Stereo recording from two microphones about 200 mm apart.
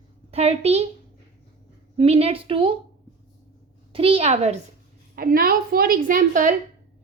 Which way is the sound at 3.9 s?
30° right (ahead or behind).